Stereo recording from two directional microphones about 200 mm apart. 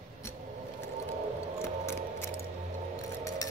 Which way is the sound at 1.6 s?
10° left (ahead or behind).